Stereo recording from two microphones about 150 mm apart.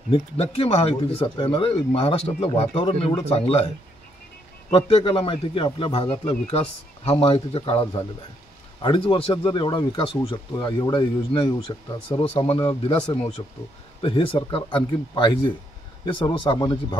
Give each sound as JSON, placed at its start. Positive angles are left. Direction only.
{"t": 0.1, "sound": "speech", "side_deg": 40}
{"t": 4.6, "sound": "speech", "side_deg": 40}